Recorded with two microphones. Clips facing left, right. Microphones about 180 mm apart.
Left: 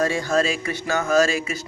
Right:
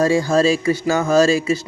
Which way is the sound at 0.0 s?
30° right (ahead or behind).